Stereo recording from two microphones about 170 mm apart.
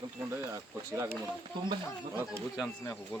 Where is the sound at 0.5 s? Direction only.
15° right (ahead or behind).